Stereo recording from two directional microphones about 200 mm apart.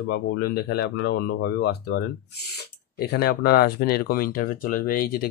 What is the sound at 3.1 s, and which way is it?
Speech, 50° left (ahead or behind).